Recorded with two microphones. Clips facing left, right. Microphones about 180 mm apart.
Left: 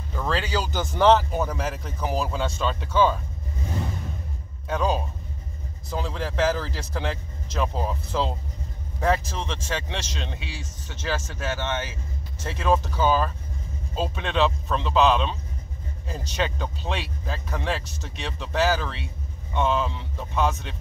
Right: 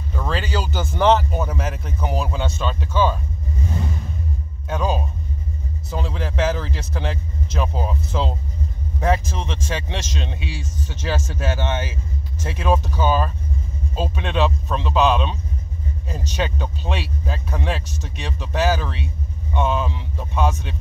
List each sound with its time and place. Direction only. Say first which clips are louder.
0.1 s a man's voice: right 1 dB; centre (ahead or behind)
4.6 s a man's voice: right 1 dB; 10° right (ahead or behind)
9.4 s speech: right 3 dB; 5° right (ahead or behind)
10.9 s a man's voice: right 3 dB; 20° right (ahead or behind)